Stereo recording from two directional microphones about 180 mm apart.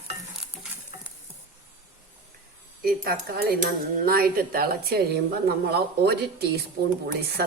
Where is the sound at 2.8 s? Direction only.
60° right (ahead or behind).